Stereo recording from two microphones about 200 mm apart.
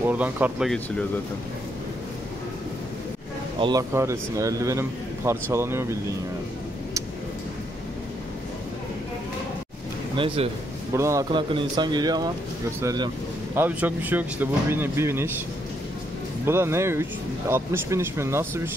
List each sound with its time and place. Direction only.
0.0 s speech: 10° right (ahead or behind)
3.5 s speech: 25° right (ahead or behind)
10.1 s speech: 25° right (ahead or behind)
10.9 s speech: 15° right (ahead or behind)
13.6 s speech: 10° right (ahead or behind)
16.4 s speech: 10° right (ahead or behind)